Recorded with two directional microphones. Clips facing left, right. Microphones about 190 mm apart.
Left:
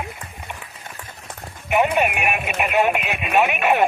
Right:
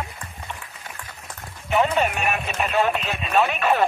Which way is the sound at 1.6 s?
15° left (ahead or behind).